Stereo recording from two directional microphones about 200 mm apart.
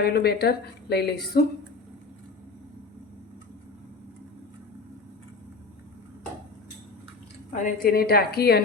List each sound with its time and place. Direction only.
0.0 s a woman's voice: 55° left (ahead or behind)
7.6 s a woman's voice: 45° left (ahead or behind)